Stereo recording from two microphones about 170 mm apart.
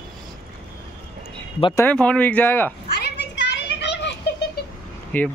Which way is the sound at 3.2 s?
90° left.